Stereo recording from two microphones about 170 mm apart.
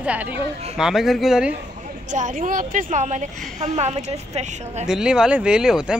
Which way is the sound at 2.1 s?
50° right (ahead or behind).